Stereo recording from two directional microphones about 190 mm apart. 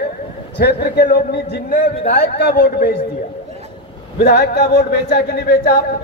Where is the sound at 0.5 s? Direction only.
60° left (ahead or behind).